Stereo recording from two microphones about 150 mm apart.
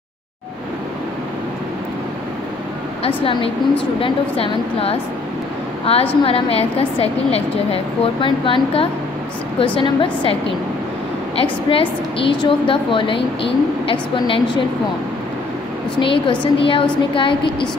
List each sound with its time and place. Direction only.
3.0 s a woman's voice: 35° left (ahead or behind)
6.2 s a woman's voice: 40° left (ahead or behind)
11.7 s a woman's voice: 35° left (ahead or behind)
16.0 s a woman's voice: 35° left (ahead or behind)